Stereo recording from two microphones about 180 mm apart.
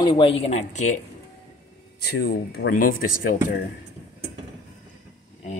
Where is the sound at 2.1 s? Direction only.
65° left (ahead or behind).